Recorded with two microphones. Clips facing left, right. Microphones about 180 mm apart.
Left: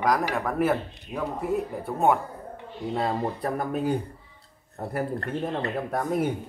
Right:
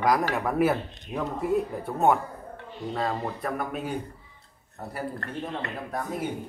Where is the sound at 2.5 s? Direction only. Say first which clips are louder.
Left 3 dB; 20° left (ahead or behind).